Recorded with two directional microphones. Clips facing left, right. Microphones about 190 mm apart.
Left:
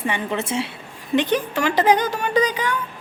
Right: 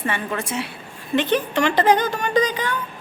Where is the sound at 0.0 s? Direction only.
20° left (ahead or behind).